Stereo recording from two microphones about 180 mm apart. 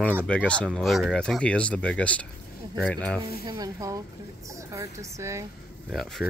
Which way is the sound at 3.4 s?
15° right (ahead or behind).